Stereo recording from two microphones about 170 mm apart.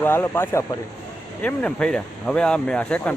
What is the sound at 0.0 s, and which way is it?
Speech, 15° left (ahead or behind).